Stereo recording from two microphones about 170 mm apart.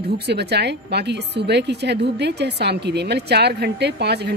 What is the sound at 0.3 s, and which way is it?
A woman's voice, 75° right (ahead or behind).